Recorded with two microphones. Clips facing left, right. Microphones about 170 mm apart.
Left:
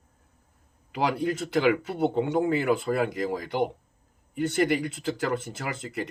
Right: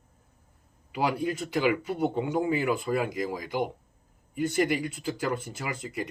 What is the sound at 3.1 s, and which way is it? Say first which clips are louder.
Speech: left 2 dB; 55° left (ahead or behind).